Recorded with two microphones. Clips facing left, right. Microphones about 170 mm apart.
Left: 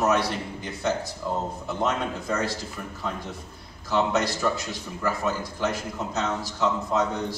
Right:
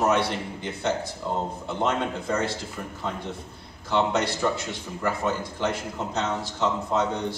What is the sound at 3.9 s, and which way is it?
A man's voice, 25° right (ahead or behind).